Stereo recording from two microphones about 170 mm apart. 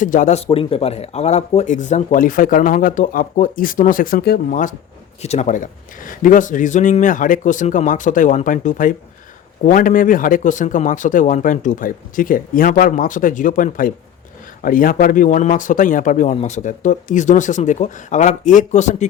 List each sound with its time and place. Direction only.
0.0 s speech: 50° left (ahead or behind)
5.2 s speech: 40° left (ahead or behind)